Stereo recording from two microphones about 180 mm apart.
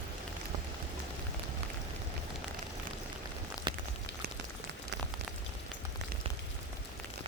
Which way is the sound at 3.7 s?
25° right (ahead or behind).